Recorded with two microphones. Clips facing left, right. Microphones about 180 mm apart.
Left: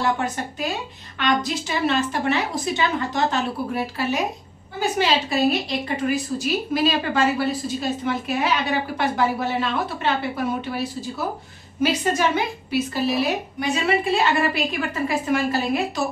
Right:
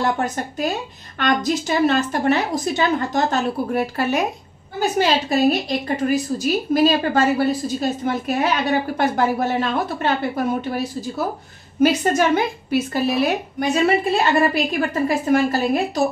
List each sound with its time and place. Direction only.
0.0 s a woman's voice: 40° right (ahead or behind)